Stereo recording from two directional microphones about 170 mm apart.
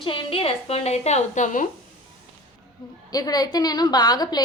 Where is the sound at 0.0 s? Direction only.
30° left (ahead or behind).